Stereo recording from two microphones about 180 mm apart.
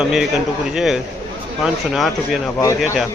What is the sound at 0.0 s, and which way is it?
Speech, 5° right (ahead or behind).